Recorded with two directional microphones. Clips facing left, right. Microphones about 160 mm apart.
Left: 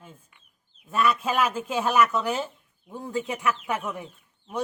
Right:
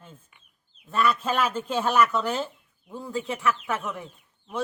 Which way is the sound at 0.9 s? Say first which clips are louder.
Even; 10° left (ahead or behind).